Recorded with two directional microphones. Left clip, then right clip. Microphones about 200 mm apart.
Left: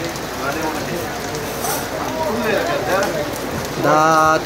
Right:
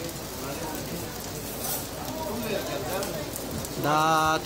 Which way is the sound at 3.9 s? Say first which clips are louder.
Left 9 dB; 10° right (ahead or behind).